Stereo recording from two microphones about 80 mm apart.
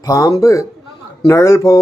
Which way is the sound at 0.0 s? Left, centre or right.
Left.